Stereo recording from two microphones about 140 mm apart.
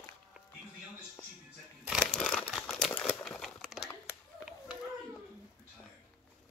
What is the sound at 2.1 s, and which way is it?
Crumpling, centre (ahead or behind).